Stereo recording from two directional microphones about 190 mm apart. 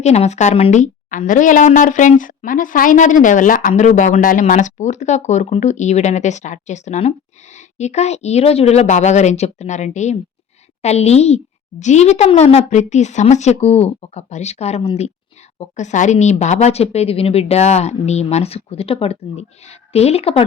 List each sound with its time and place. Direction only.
0.0 s a woman's voice: 35° left (ahead or behind)